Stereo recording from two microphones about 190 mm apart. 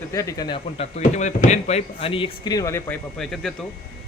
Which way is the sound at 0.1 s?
15° left (ahead or behind).